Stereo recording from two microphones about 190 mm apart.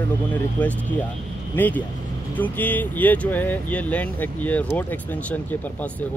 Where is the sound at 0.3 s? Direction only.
10° left (ahead or behind).